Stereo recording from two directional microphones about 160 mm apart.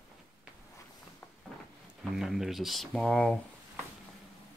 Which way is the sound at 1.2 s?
15° left (ahead or behind).